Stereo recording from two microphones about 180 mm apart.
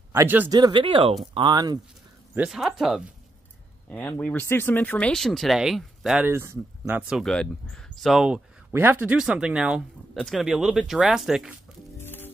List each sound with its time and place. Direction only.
0.1 s speech: 15° right (ahead or behind)
0.5 s speech: 25° right (ahead or behind)
2.3 s speech: 5° right (ahead or behind)
12.0 s music: 10° left (ahead or behind)